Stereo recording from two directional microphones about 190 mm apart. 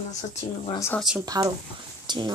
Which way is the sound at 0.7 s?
15° left (ahead or behind).